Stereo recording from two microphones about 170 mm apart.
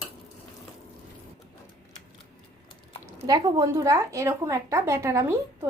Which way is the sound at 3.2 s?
20° right (ahead or behind).